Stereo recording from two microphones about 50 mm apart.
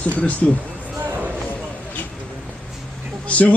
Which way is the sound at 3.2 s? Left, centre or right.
Left.